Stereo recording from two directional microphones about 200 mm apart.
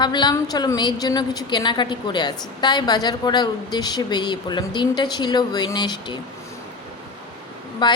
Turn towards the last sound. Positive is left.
turn(degrees=20)  # may be behind; listen again after turning